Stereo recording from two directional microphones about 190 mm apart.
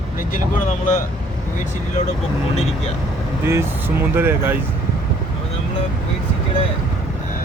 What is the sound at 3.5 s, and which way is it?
Speech, 10° right (ahead or behind).